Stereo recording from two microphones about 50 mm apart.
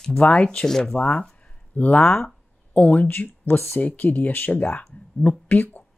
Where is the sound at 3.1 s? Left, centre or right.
Left.